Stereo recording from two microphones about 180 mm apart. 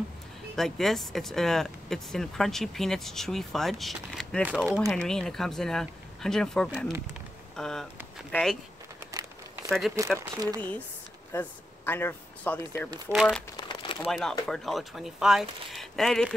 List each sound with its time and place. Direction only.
0.6 s speech: centre (ahead or behind)
9.0 s a sound: 10° right (ahead or behind)
9.7 s speech: centre (ahead or behind)
10.1 s speech: 20° right (ahead or behind)
11.3 s speech: 10° left (ahead or behind)
13.1 s speech: centre (ahead or behind)
13.6 s crumpling: 25° left (ahead or behind)
14.5 s speech: centre (ahead or behind)